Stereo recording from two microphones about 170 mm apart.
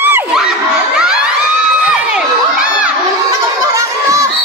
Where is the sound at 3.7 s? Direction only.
20° right (ahead or behind).